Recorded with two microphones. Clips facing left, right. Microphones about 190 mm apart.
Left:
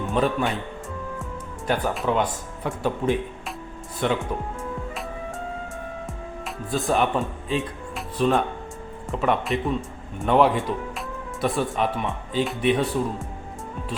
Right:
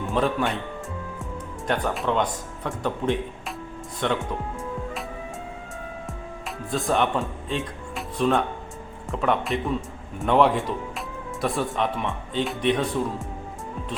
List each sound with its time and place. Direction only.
0.0 s speech: centre (ahead or behind)
6.7 s speech: centre (ahead or behind)